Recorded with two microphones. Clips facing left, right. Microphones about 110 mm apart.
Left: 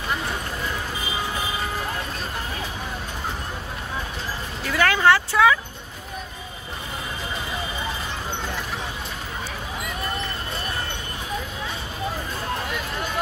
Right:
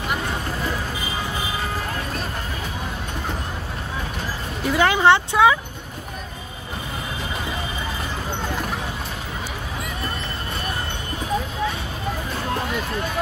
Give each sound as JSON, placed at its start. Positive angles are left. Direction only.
{"t": 4.6, "sound": "speech", "side_deg": -20}